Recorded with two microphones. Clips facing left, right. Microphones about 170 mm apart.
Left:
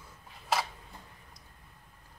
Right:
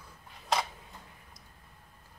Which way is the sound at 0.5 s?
5° left (ahead or behind).